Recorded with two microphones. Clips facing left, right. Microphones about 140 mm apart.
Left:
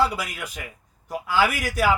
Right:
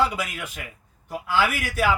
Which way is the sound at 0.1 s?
10° left (ahead or behind).